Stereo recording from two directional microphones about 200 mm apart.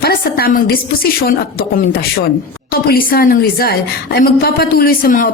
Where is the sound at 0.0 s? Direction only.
50° left (ahead or behind).